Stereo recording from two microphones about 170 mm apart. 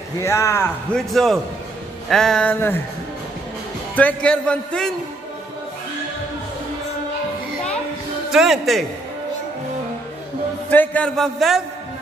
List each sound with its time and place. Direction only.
0.2 s a man's voice: 15° left (ahead or behind)
0.9 s a man's voice: centre (ahead or behind)
3.9 s a man's voice: 5° left (ahead or behind)
8.3 s a man's voice: 5° right (ahead or behind)
10.7 s a man's voice: 10° left (ahead or behind)